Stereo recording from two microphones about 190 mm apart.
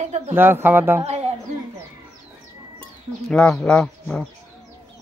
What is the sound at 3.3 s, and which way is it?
Speech, 5° left (ahead or behind).